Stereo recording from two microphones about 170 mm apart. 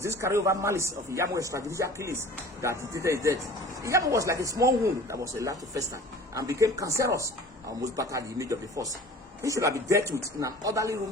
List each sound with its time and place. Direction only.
0.0 s speech: 15° right (ahead or behind)